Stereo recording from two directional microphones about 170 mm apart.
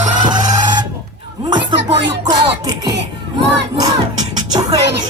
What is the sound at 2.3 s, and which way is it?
Music, 25° right (ahead or behind).